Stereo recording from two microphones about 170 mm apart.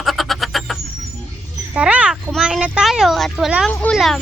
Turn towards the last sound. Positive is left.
turn(degrees=0)  # may be behind; listen again after turning